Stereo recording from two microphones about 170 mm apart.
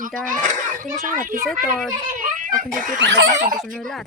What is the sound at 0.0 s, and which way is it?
A woman's voice, 50° right (ahead or behind).